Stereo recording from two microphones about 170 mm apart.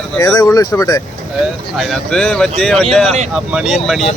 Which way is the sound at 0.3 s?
20° left (ahead or behind).